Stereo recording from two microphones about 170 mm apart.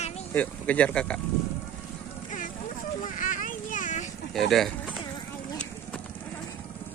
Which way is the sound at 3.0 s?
50° left (ahead or behind).